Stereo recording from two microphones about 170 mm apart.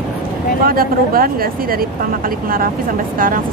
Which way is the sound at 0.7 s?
60° right (ahead or behind).